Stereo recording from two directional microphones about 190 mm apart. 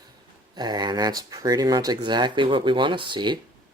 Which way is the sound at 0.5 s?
20° right (ahead or behind).